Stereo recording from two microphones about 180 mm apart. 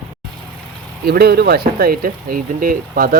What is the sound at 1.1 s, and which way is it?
Speech, 60° right (ahead or behind).